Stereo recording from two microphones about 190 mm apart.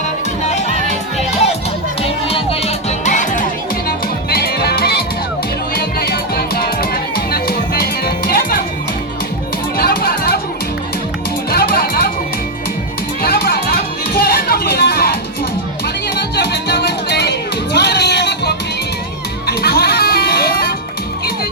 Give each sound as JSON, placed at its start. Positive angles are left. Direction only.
{"t": 0.7, "sound": "music", "side_deg": -40}
{"t": 2.0, "sound": "music", "side_deg": 30}
{"t": 9.7, "sound": "music", "side_deg": 50}
{"t": 11.5, "sound": "music", "side_deg": 55}
{"t": 13.2, "sound": "music", "side_deg": 55}